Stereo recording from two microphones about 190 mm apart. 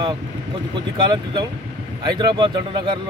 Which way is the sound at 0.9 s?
25° right (ahead or behind).